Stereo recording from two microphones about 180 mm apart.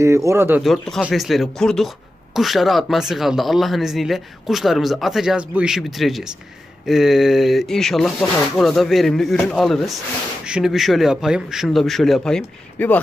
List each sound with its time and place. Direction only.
0.0 s speech: 15° right (ahead or behind)
0.6 s speech: centre (ahead or behind)